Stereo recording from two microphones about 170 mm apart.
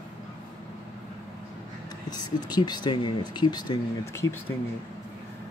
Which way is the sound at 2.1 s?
25° left (ahead or behind).